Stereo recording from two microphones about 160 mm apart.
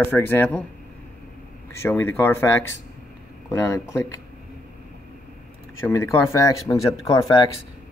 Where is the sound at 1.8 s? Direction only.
15° left (ahead or behind).